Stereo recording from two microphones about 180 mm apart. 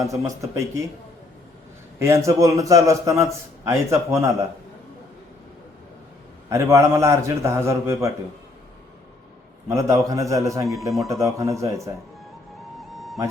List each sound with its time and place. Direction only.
0.1 s a man's voice: 15° right (ahead or behind)
2.0 s a man's voice: 15° right (ahead or behind)
6.5 s a man's voice: 15° right (ahead or behind)
9.6 s a man's voice: 15° right (ahead or behind)
12.8 s music: centre (ahead or behind)